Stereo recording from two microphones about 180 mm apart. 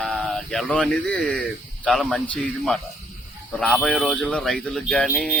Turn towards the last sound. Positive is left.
turn(degrees=0)  # may be behind; listen again after turning